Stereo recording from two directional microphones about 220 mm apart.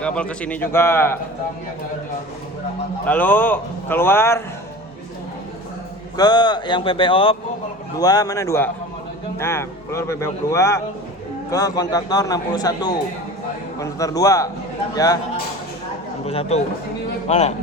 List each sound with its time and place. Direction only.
0.0 s speech: 5° left (ahead or behind)
3.1 s speech: 10° left (ahead or behind)
6.1 s a man's voice: 20° left (ahead or behind)
16.2 s a man's voice: 25° left (ahead or behind)